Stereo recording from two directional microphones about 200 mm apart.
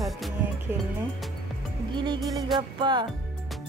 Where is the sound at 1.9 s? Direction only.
25° right (ahead or behind).